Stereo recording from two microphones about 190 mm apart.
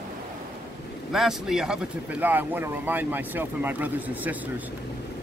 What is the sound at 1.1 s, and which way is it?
Speech, centre (ahead or behind).